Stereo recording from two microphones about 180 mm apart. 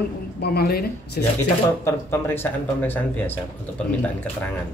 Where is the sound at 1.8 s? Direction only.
10° left (ahead or behind).